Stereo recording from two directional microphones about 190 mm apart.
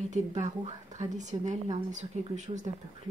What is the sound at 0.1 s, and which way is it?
Speech, 40° right (ahead or behind).